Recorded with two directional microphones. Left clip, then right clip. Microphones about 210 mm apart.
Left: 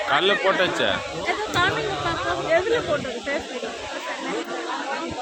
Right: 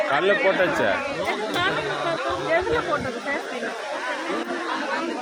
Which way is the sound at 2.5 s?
25° left (ahead or behind).